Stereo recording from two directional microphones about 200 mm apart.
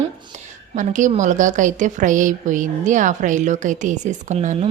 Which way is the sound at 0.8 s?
40° right (ahead or behind).